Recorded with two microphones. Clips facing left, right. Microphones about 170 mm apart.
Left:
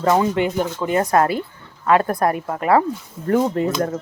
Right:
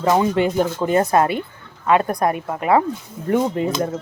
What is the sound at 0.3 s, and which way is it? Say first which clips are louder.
A woman's voice: right 2 dB; 30° right (ahead or behind).